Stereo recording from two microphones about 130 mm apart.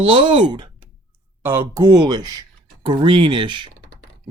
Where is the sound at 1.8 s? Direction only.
30° right (ahead or behind).